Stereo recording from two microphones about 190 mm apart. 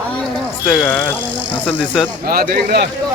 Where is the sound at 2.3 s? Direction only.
50° right (ahead or behind).